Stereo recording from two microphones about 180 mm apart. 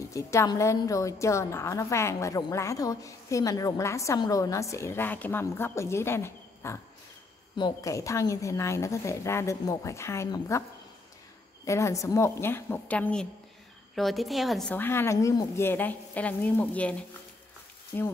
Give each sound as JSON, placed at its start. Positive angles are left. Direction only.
{"t": 0.1, "sound": "a woman's voice", "side_deg": 15}
{"t": 11.6, "sound": "a woman's voice", "side_deg": 15}
{"t": 17.9, "sound": "a woman's voice", "side_deg": 10}